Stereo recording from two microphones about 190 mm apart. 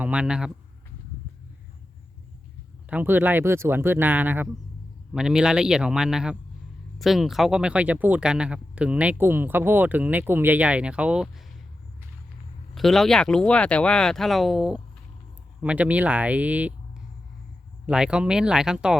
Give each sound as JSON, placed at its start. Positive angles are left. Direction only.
{"t": 0.0, "sound": "speech", "side_deg": -5}
{"t": 2.9, "sound": "speech", "side_deg": -10}
{"t": 12.7, "sound": "speech", "side_deg": 0}
{"t": 17.8, "sound": "speech", "side_deg": -5}